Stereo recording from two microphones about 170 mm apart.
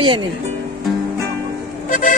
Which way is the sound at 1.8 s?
50° left (ahead or behind).